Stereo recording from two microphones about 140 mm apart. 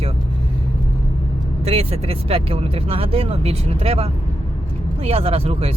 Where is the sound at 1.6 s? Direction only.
45° right (ahead or behind).